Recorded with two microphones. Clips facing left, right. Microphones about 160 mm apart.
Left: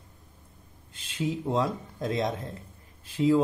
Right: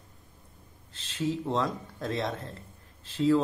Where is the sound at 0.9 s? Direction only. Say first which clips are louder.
Even; 10° left (ahead or behind).